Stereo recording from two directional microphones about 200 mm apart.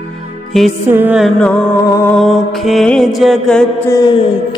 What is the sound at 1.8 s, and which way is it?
Mantra, 15° left (ahead or behind).